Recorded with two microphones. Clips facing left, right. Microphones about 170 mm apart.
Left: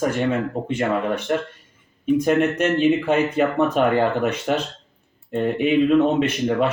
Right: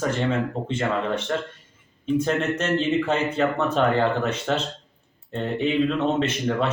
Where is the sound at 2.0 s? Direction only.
15° left (ahead or behind).